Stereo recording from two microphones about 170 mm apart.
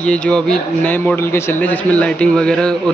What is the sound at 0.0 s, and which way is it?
Speech, 5° left (ahead or behind).